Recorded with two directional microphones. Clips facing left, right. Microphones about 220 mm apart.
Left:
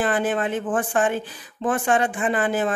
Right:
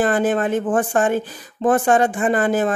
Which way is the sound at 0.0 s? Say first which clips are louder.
Right 4 dB; 45° right (ahead or behind).